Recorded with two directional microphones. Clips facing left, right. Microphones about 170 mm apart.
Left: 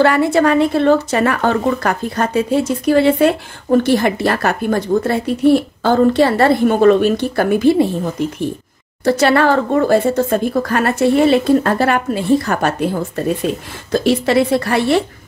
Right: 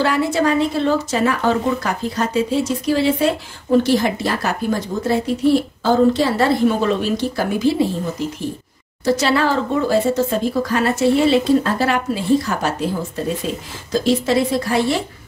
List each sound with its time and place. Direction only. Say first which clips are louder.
0.0 s speech: left 5 dB; 60° left (ahead or behind)